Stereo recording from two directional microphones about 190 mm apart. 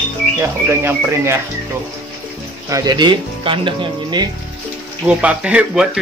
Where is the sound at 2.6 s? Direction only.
20° right (ahead or behind).